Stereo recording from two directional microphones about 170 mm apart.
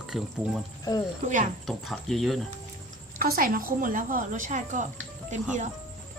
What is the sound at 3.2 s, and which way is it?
A woman's voice, 60° right (ahead or behind).